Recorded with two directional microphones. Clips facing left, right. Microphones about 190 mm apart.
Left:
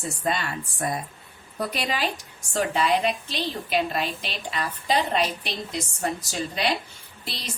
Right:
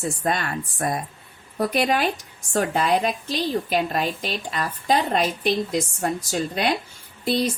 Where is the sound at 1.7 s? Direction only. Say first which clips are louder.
Right 7 dB; 55° right (ahead or behind).